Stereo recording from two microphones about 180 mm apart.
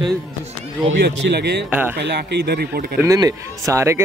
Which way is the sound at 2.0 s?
70° right (ahead or behind).